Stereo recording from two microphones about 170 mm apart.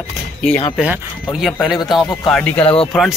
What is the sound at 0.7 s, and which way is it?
A man's voice, 5° right (ahead or behind).